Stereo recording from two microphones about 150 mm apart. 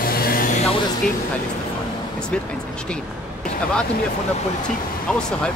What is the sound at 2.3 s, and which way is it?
Speech, 5° left (ahead or behind).